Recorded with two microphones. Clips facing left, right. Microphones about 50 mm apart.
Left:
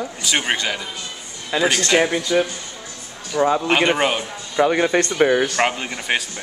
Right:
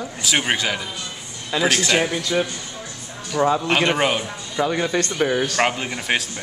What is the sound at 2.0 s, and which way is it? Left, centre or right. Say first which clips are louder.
Speech: left 3 dB; left.